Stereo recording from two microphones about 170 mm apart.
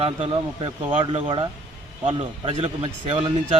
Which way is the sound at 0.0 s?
30° right (ahead or behind).